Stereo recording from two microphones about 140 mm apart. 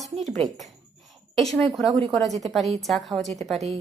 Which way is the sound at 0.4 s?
Centre (ahead or behind).